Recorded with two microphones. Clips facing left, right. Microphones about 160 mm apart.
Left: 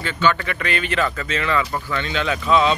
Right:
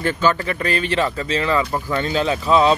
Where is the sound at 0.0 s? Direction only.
35° right (ahead or behind).